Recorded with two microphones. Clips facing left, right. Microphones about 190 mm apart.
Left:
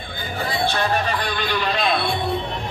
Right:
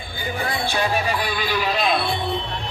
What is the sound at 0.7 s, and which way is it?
Speech, 10° right (ahead or behind).